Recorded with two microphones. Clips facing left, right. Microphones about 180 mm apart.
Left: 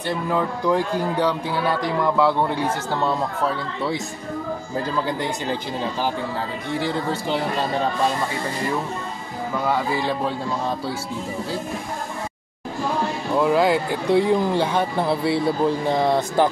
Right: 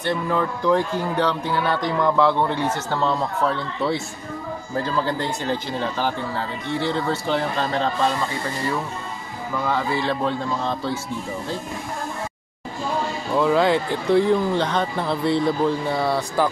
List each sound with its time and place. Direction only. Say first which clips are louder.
0.0 s speech: even; 10° left (ahead or behind)
4.8 s speech: even; 15° left (ahead or behind)
9.7 s speech: even; 10° left (ahead or behind)
13.4 s speech: even; 5° left (ahead or behind)
15.9 s speech: left 3 dB; 20° left (ahead or behind)